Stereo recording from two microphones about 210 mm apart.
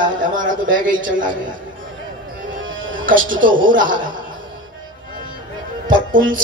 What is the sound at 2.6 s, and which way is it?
Music, 65° right (ahead or behind).